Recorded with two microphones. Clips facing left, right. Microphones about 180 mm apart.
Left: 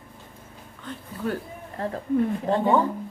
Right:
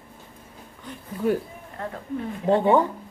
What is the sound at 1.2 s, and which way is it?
Speech, 10° right (ahead or behind).